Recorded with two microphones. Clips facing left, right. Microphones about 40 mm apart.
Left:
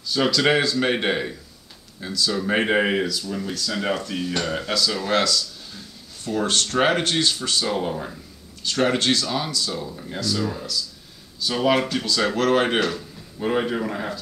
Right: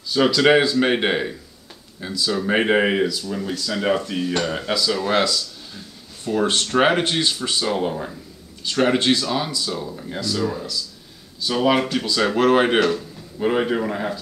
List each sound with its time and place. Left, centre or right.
0.1 s speech: centre
6.2 s speech: centre